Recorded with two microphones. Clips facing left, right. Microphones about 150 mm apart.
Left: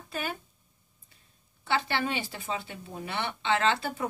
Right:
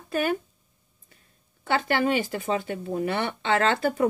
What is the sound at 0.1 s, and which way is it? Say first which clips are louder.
Speech: right 10 dB; 55° right (ahead or behind).